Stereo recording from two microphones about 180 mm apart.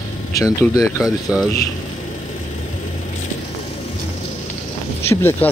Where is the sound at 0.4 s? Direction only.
20° left (ahead or behind).